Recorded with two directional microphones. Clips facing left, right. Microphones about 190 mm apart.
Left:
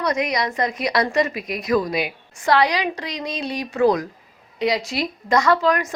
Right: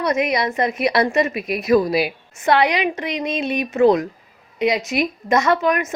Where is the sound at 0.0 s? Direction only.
25° right (ahead or behind).